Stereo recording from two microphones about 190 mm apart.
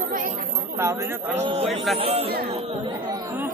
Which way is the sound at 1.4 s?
30° right (ahead or behind).